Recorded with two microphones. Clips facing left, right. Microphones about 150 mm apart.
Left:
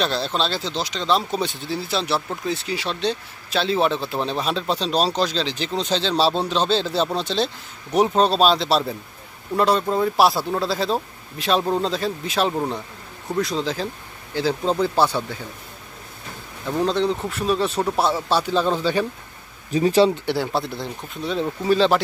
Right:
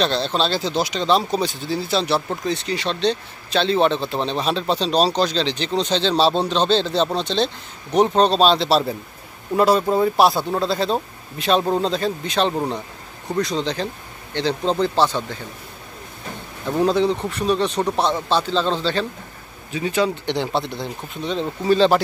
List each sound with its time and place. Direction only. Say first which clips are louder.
0.0 s a man's voice: right 2 dB; 5° left (ahead or behind)
1.0 s a man's voice: right 1 dB; centre (ahead or behind)
16.7 s a man's voice: right 3 dB; 5° right (ahead or behind); by 19.0 s 10° left (ahead or behind)
19.7 s speech: left 5 dB; 35° left (ahead or behind)
20.2 s a man's voice: right 1 dB; 5° left (ahead or behind)